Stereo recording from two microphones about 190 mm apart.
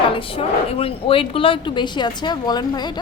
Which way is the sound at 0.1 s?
30° left (ahead or behind).